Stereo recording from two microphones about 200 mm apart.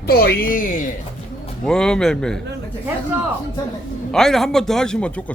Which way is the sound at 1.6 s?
5° left (ahead or behind).